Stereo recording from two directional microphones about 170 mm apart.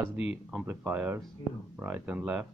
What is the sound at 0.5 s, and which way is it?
Speech, 10° right (ahead or behind).